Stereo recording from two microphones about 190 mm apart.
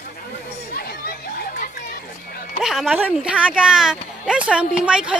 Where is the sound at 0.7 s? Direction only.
55° left (ahead or behind).